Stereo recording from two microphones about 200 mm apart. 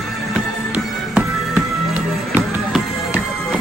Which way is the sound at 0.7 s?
5° right (ahead or behind).